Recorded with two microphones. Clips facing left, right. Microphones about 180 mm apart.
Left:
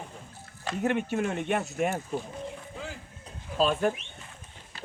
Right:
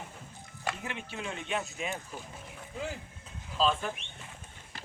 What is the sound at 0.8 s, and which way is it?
Speech, 55° left (ahead or behind).